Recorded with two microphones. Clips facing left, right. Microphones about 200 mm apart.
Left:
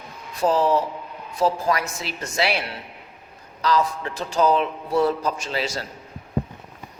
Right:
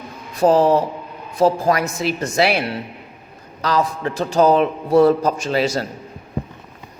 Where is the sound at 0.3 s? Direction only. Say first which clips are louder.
Right 6 dB; 45° right (ahead or behind).